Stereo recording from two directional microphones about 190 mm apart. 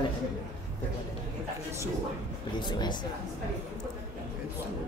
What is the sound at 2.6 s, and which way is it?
Speech, 25° left (ahead or behind).